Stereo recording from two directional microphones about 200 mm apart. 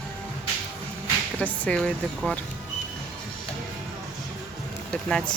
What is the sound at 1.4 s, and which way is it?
Speech, 5° left (ahead or behind).